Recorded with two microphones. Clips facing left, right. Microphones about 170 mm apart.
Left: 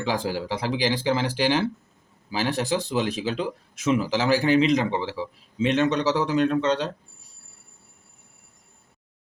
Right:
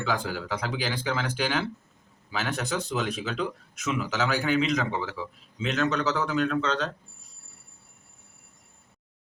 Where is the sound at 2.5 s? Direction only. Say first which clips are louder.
Left 5 dB; 30° left (ahead or behind).